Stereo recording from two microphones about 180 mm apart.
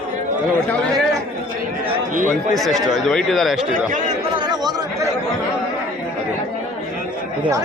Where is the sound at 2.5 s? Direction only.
Centre (ahead or behind).